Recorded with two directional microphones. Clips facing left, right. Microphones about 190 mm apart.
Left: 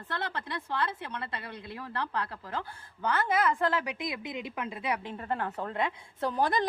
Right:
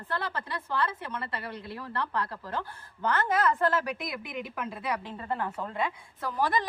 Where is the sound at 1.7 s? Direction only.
15° left (ahead or behind).